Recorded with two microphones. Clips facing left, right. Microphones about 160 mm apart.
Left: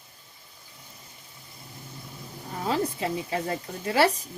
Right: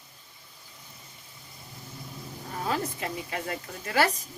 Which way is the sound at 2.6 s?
25° left (ahead or behind).